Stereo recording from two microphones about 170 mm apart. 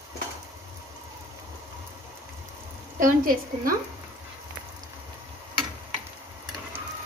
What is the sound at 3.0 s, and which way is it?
Speech, 55° right (ahead or behind).